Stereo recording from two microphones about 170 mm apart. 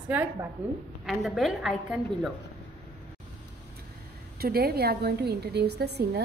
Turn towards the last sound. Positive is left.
turn(degrees=-75)  # may be behind; listen again after turning